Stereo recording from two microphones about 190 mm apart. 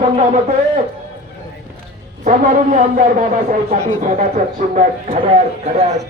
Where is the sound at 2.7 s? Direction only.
40° right (ahead or behind).